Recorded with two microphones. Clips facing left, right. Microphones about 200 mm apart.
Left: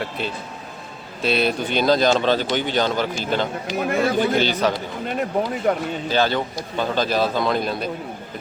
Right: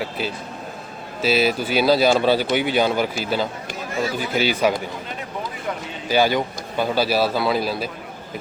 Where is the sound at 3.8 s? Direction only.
60° left (ahead or behind).